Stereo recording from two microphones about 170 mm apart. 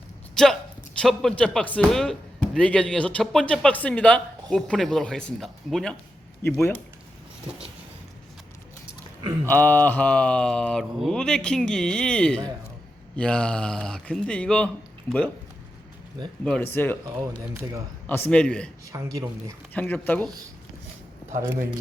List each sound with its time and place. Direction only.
0.4 s speech: 5° left (ahead or behind)
6.4 s speech: 15° left (ahead or behind)
9.5 s speech: 10° left (ahead or behind)
16.4 s speech: 5° left (ahead or behind)
17.5 s a man's voice: 15° right (ahead or behind)
18.0 s speech: 10° left (ahead or behind)
18.9 s a man's voice: 20° right (ahead or behind)
19.7 s speech: 10° left (ahead or behind)
21.3 s a man's voice: 15° right (ahead or behind)